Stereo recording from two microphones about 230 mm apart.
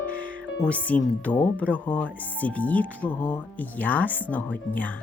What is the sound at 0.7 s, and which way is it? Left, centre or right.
Speech, centre.